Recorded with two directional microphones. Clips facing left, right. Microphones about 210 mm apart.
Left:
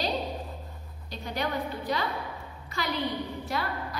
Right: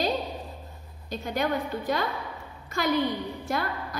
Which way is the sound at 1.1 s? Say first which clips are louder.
Right 4 dB; 50° right (ahead or behind).